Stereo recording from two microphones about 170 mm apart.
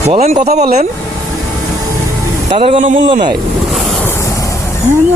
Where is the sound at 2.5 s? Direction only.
40° right (ahead or behind).